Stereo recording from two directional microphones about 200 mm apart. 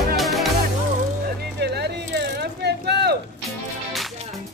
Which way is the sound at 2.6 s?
55° right (ahead or behind).